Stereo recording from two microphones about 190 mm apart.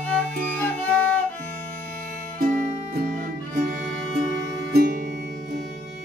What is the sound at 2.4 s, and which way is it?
Music, 50° right (ahead or behind).